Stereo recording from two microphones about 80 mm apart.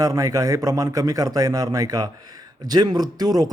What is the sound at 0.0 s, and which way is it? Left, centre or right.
Speech, right.